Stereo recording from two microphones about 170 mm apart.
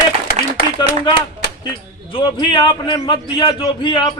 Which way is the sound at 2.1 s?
30° left (ahead or behind).